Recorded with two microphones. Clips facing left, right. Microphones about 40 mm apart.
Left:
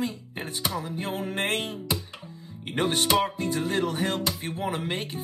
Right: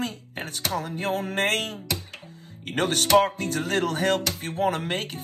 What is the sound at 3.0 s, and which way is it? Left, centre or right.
Music, right.